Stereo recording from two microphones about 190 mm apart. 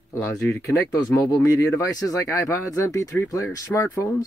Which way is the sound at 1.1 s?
15° left (ahead or behind).